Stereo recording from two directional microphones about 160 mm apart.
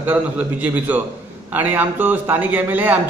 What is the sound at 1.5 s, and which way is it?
A man's voice, 10° right (ahead or behind).